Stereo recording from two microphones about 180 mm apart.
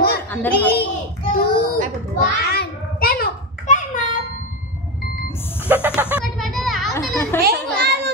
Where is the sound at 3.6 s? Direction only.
45° left (ahead or behind).